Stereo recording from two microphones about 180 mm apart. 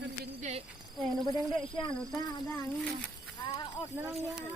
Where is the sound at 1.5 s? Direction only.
25° left (ahead or behind).